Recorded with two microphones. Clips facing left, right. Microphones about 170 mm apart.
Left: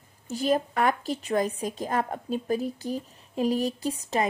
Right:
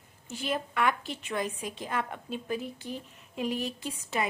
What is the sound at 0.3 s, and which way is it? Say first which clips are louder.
A woman's voice: left 8 dB; 40° left (ahead or behind).